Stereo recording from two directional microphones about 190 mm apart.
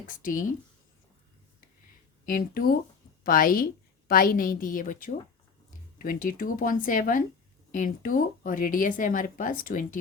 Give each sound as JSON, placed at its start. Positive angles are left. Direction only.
{"t": 0.1, "sound": "speech", "side_deg": 45}
{"t": 2.2, "sound": "speech", "side_deg": 50}